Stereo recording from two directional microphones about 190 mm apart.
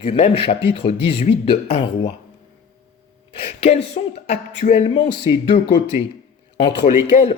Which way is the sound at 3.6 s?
35° left (ahead or behind).